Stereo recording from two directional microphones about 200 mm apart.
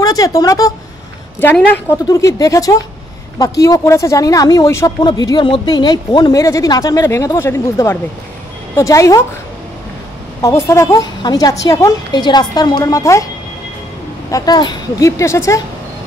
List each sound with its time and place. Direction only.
0.0 s speech: 20° left (ahead or behind)
10.4 s speech: 15° left (ahead or behind)
14.3 s speech: 20° left (ahead or behind)